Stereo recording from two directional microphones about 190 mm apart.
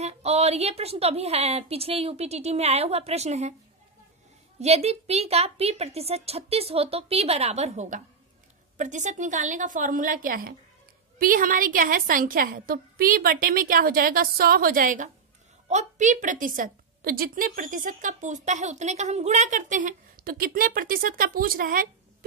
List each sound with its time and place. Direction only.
0.0 s a woman's voice: 35° right (ahead or behind)
4.6 s a woman's voice: 35° right (ahead or behind)